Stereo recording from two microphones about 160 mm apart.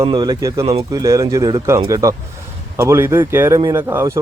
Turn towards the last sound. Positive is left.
turn(degrees=-15)  # may be behind; listen again after turning